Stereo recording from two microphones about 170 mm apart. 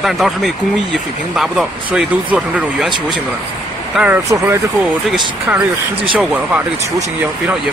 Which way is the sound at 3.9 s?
10° right (ahead or behind).